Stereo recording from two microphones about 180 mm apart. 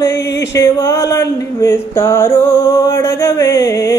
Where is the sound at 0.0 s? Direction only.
15° left (ahead or behind).